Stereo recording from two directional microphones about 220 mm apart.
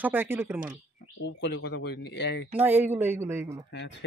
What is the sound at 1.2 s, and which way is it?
Speech, 50° left (ahead or behind).